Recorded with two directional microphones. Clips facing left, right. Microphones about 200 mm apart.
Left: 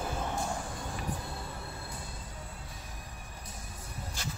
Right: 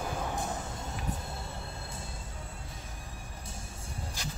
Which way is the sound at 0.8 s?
25° right (ahead or behind).